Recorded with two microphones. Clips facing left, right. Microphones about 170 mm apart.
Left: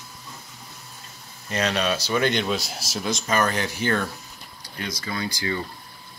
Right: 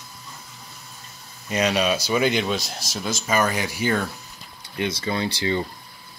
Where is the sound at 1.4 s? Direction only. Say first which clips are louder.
Right 3 dB; 10° right (ahead or behind).